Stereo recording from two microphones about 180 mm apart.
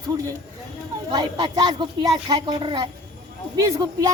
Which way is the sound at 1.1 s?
25° right (ahead or behind).